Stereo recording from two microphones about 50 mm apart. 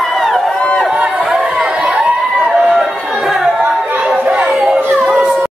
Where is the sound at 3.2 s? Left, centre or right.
Centre.